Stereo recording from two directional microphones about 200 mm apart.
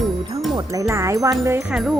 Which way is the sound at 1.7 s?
Centre (ahead or behind).